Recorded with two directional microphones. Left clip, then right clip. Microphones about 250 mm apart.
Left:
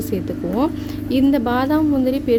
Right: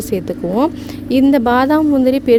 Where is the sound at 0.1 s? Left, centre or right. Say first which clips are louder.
Right 7 dB; right.